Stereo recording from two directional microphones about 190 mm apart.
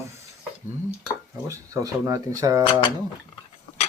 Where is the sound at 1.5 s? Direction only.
20° right (ahead or behind).